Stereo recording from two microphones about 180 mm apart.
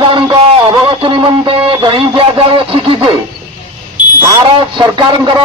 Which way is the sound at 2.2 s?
30° right (ahead or behind).